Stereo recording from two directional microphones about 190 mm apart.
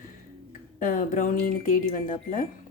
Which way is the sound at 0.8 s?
45° left (ahead or behind).